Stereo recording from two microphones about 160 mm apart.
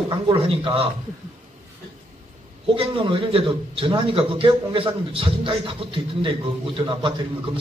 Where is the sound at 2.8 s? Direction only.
35° right (ahead or behind).